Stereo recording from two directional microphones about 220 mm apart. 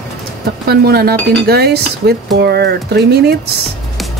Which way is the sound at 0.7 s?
45° right (ahead or behind).